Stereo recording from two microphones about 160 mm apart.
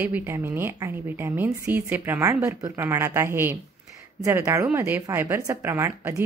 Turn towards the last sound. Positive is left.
turn(degrees=-15)  # may be behind; listen again after turning